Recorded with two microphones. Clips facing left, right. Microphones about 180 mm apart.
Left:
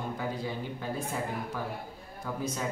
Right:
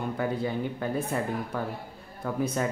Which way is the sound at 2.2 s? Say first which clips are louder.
Right 5 dB; 60° right (ahead or behind).